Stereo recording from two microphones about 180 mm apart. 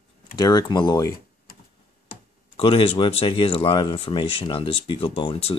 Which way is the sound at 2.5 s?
30° left (ahead or behind).